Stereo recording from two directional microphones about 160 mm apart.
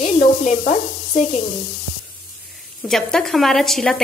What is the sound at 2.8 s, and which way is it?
A woman's voice, centre (ahead or behind).